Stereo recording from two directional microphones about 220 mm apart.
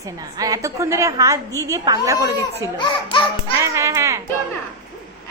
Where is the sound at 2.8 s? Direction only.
20° left (ahead or behind).